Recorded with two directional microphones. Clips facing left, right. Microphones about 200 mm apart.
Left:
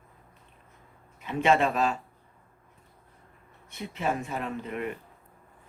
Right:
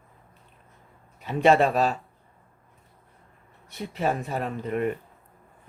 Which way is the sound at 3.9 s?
35° right (ahead or behind).